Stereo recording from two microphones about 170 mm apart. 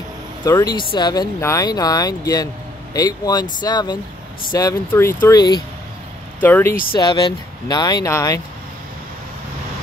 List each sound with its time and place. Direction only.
0.5 s speech: 20° left (ahead or behind)
6.4 s speech: 10° left (ahead or behind)
6.9 s speech: 25° left (ahead or behind)